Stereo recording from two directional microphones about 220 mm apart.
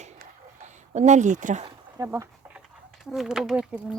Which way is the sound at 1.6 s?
15° right (ahead or behind).